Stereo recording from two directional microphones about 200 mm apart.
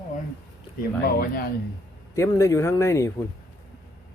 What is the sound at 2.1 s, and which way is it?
Speech, 15° left (ahead or behind).